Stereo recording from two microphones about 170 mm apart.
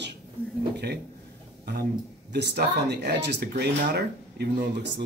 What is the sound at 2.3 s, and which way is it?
Speech, 85° right.